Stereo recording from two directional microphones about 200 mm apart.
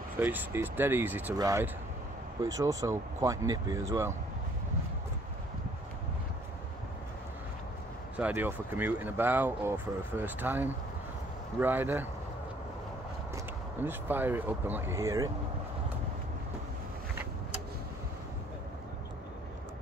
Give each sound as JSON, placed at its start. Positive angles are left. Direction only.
{"t": 0.2, "sound": "speech", "side_deg": -10}
{"t": 8.2, "sound": "speech", "side_deg": -10}
{"t": 13.7, "sound": "speech", "side_deg": -10}